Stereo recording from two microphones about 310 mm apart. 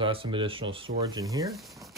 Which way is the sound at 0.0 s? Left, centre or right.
Centre.